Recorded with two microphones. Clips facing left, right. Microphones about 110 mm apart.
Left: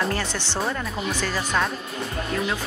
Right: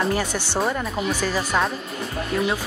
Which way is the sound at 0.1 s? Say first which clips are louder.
Right 3 dB; 10° right (ahead or behind).